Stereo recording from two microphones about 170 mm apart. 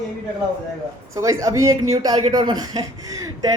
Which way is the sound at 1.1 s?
20° right (ahead or behind).